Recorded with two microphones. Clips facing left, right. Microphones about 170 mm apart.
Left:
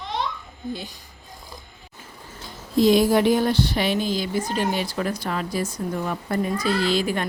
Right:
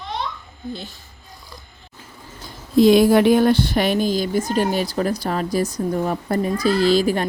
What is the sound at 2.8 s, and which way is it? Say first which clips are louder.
Speech: right 4 dB; 60° right (ahead or behind).